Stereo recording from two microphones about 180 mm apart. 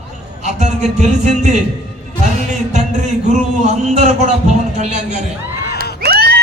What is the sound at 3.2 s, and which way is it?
A man's voice, 40° right (ahead or behind).